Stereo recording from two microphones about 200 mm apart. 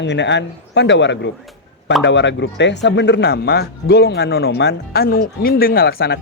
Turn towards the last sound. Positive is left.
turn(degrees=50)  # may be behind; listen again after turning